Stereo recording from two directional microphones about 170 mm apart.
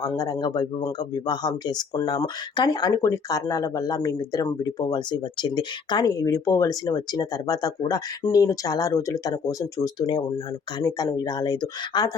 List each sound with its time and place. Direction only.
0.0 s speech: 20° left (ahead or behind)